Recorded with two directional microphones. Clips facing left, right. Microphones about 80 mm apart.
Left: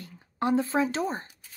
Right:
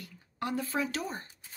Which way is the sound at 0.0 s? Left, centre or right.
Left.